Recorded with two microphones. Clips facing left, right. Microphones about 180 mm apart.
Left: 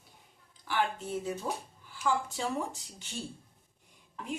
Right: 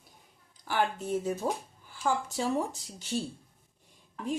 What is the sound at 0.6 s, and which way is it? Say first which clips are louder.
A woman's voice: right 3 dB; 45° right (ahead or behind).